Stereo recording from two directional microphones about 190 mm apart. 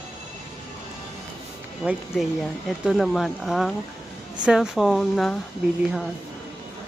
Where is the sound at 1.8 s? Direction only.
5° right (ahead or behind).